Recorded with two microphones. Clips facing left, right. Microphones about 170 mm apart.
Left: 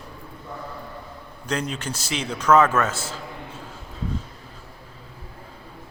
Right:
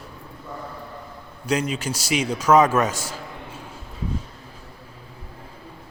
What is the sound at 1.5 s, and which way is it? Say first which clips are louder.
A man's voice: right 4 dB; 10° right (ahead or behind).